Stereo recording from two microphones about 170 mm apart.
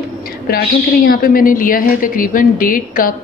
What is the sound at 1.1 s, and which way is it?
A woman's voice, 55° left (ahead or behind).